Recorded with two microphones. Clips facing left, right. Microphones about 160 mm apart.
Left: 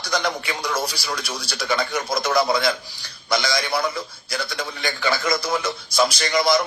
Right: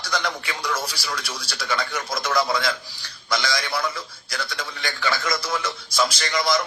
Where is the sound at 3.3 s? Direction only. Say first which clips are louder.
Left 3 dB; 15° left (ahead or behind).